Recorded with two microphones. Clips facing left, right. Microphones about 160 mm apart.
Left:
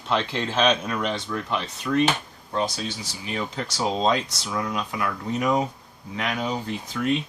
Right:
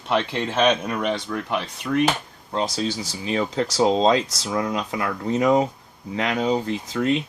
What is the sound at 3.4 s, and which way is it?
Speech, 30° right (ahead or behind).